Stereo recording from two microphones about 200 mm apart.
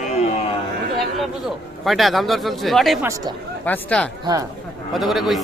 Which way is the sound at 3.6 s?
5° left (ahead or behind).